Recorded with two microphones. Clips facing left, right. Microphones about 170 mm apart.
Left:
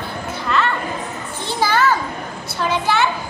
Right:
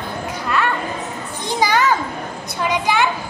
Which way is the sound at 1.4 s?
15° right (ahead or behind).